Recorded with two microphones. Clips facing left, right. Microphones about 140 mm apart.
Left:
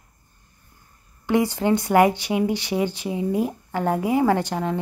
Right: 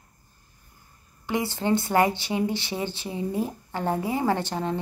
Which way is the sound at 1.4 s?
15° left (ahead or behind).